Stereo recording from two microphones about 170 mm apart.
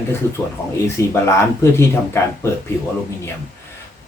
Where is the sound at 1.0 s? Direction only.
15° left (ahead or behind).